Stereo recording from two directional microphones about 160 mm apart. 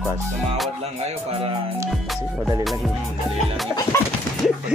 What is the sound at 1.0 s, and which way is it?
Speech, 35° right (ahead or behind).